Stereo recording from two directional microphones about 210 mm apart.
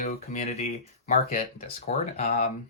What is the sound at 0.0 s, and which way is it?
Speech, 35° left (ahead or behind).